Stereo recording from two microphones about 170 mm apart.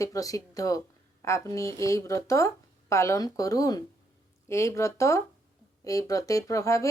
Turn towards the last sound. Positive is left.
turn(degrees=20)  # may be behind; listen again after turning